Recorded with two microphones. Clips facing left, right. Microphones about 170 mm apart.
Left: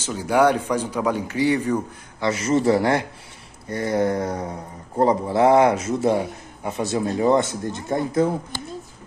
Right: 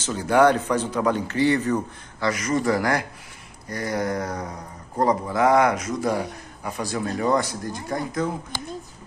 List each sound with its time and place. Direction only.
0.0 s speech: 10° left (ahead or behind)
2.2 s speech: 25° left (ahead or behind)